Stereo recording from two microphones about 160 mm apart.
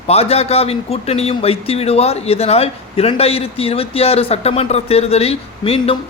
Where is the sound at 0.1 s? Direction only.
40° left (ahead or behind).